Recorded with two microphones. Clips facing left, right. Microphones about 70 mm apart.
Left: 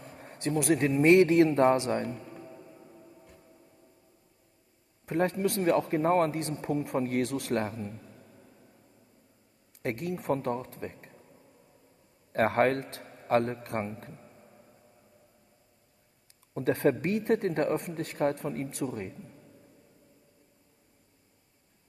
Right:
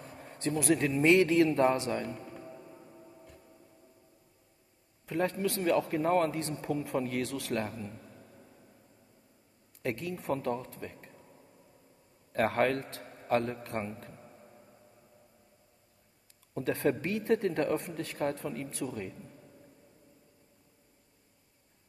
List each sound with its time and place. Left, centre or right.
0.1 s a sound: left
0.6 s a man's voice: left
2.4 s music: centre
5.0 s a man's voice: left
8.0 s a sound: centre
9.8 s a man's voice: left
12.3 s a man's voice: left
14.1 s a sound: centre
16.5 s a man's voice: left